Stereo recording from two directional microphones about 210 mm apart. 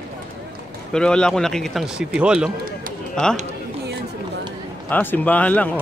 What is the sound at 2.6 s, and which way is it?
Run, 40° right (ahead or behind).